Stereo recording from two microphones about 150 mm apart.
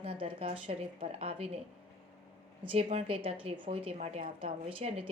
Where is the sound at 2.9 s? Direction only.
40° right (ahead or behind).